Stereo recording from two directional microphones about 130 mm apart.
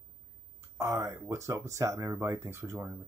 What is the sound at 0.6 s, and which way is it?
Speech, 25° right (ahead or behind).